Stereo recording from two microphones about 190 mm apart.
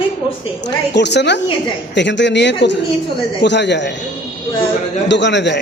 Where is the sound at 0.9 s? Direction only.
65° left (ahead or behind).